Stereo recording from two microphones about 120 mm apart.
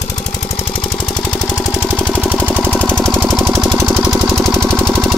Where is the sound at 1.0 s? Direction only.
40° left (ahead or behind).